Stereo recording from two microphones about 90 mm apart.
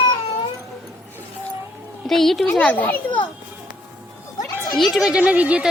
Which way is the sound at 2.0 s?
5° left (ahead or behind).